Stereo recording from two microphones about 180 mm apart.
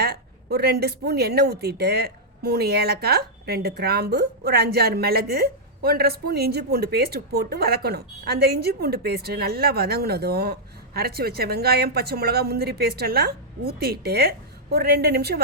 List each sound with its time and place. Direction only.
0.0 s a woman's voice: 60° right (ahead or behind)